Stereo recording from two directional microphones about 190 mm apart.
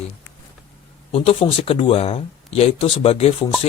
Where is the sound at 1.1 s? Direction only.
30° left (ahead or behind).